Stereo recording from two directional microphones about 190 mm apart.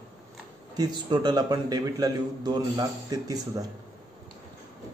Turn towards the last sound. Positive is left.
turn(degrees=-20)  # may be behind; listen again after turning